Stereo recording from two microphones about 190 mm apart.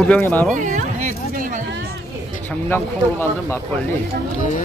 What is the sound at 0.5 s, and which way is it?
Speech, 45° right (ahead or behind).